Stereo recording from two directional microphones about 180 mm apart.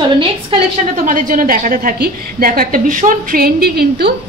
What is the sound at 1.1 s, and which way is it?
A woman's voice, 50° right (ahead or behind).